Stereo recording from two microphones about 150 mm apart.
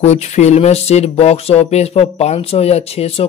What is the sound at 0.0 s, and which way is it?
Speech, 50° left (ahead or behind).